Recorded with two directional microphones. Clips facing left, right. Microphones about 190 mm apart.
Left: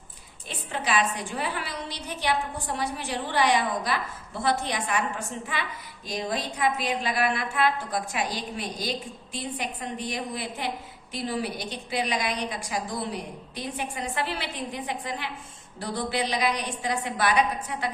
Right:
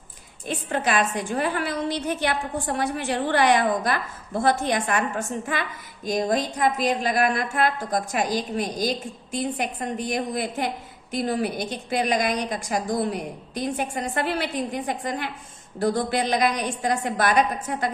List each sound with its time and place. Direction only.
0.4 s a woman's voice: 50° right (ahead or behind)